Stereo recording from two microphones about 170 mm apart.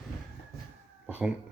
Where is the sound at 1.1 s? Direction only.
10° right (ahead or behind).